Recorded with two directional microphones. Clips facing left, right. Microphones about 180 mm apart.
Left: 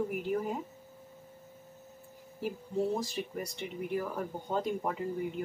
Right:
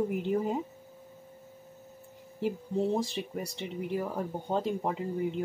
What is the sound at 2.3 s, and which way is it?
Speech, 25° right (ahead or behind).